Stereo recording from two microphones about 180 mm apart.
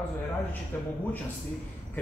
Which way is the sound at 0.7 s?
10° left (ahead or behind).